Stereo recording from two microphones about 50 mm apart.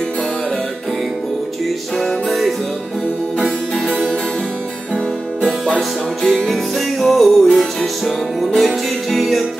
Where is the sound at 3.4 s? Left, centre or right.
Centre.